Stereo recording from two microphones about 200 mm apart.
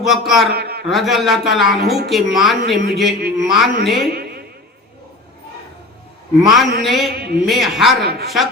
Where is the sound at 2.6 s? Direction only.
55° right (ahead or behind).